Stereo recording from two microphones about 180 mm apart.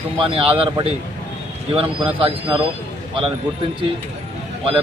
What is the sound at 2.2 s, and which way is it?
Speech, 30° right (ahead or behind).